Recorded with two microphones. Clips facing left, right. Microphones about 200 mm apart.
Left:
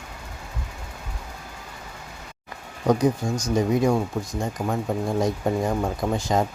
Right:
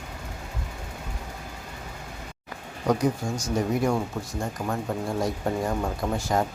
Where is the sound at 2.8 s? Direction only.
20° left (ahead or behind).